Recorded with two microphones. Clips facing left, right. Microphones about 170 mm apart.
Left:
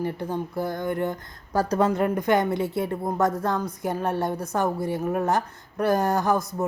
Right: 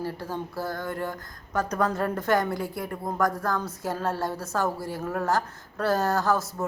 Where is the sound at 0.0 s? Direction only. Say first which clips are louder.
Left 4 dB; 20° left (ahead or behind).